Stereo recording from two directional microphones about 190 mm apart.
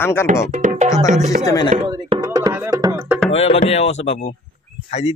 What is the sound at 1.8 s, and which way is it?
Music, 25° right (ahead or behind).